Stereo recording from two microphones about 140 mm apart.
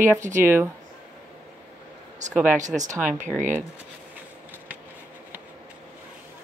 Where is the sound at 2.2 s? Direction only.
60° right (ahead or behind).